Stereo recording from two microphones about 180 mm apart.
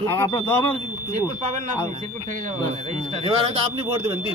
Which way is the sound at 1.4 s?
40° right (ahead or behind).